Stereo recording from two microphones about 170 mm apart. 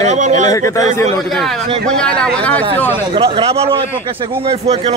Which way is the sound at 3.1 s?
30° right (ahead or behind).